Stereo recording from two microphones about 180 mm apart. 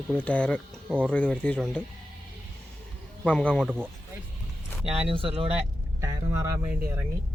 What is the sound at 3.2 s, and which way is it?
Speech, 5° left (ahead or behind).